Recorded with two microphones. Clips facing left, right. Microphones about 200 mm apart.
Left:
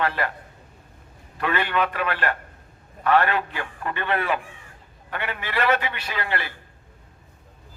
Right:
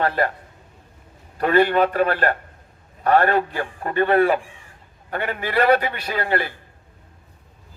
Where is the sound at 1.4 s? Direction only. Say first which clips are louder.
Right 8 dB; 40° right (ahead or behind).